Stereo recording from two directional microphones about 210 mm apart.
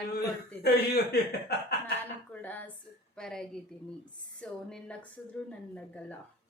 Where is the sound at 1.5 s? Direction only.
50° left (ahead or behind).